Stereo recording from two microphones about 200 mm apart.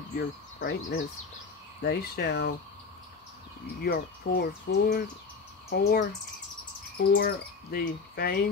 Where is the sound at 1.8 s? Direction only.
55° left (ahead or behind).